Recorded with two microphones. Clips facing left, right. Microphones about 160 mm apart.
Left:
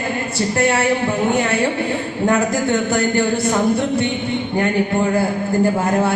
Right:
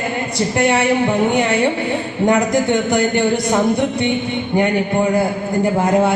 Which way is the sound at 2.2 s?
20° right (ahead or behind).